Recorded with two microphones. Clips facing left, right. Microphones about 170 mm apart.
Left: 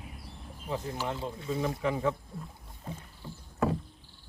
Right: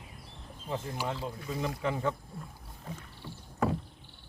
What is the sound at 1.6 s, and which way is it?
Speech, centre (ahead or behind).